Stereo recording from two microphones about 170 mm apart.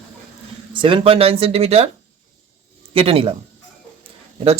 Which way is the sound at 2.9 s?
35° right (ahead or behind).